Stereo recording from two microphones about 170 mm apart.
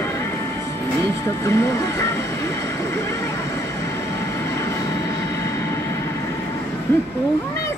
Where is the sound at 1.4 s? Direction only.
15° left (ahead or behind).